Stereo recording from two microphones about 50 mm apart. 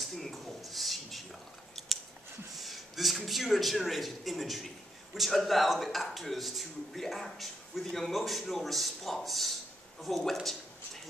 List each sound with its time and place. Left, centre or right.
0.0 s a sound: centre
1.8 s scissors: centre
2.5 s a man's voice: centre